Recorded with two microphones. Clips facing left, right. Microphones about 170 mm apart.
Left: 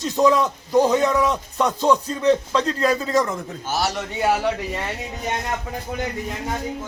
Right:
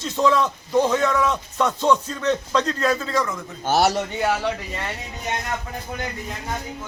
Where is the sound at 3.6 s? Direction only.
60° right (ahead or behind).